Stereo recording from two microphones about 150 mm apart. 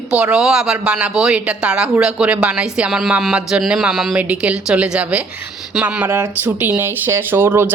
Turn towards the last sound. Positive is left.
turn(degrees=-15)  # may be behind; listen again after turning